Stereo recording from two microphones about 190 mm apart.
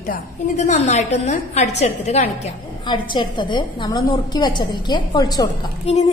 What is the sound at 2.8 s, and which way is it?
A woman's voice, 25° left (ahead or behind).